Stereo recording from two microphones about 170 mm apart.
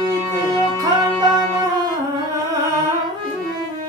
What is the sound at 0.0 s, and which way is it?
Music, 25° right (ahead or behind).